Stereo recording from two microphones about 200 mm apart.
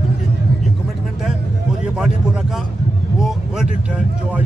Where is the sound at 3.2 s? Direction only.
Centre (ahead or behind).